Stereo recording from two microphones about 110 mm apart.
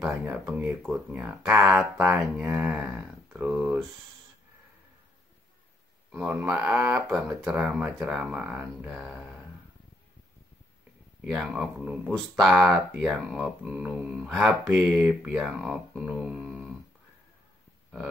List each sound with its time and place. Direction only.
0.2 s speech: 15° right (ahead or behind)
6.4 s speech: 10° right (ahead or behind)
9.1 s a sound: 10° right (ahead or behind)
11.3 s speech: 5° right (ahead or behind)